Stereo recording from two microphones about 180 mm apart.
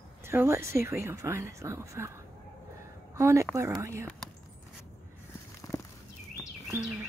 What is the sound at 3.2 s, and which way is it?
Speech, 15° right (ahead or behind).